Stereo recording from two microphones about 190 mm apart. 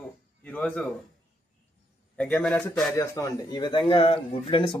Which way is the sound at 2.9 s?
15° left (ahead or behind).